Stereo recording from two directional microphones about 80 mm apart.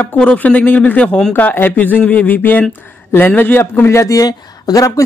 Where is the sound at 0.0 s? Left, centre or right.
Centre; by 4.3 s left.